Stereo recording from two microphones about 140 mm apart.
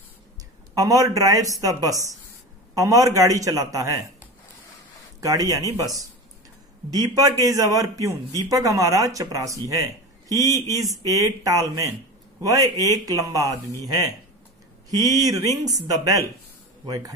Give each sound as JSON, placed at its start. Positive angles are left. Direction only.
{"t": 0.7, "sound": "speech", "side_deg": -25}
{"t": 5.2, "sound": "speech", "side_deg": -25}